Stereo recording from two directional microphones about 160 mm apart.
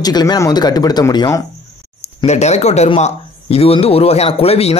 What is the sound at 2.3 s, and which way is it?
Speech, 45° left (ahead or behind).